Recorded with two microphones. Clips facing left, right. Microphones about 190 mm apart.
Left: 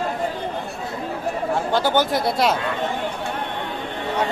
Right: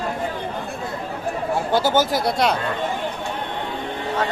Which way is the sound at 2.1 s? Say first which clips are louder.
Even; centre (ahead or behind).